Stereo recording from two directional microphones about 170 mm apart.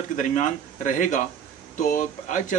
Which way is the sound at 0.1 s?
50° left (ahead or behind).